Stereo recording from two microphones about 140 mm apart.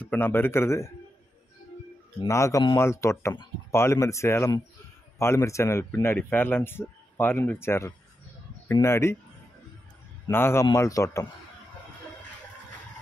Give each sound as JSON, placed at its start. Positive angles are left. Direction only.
{"t": 0.0, "sound": "speech", "side_deg": 15}
{"t": 2.2, "sound": "speech", "side_deg": 20}
{"t": 10.3, "sound": "speech", "side_deg": 15}